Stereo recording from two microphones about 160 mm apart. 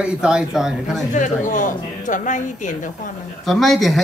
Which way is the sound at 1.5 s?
55° left (ahead or behind).